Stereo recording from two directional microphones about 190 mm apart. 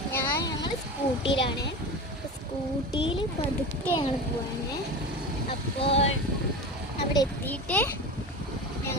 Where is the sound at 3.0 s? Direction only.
25° left (ahead or behind).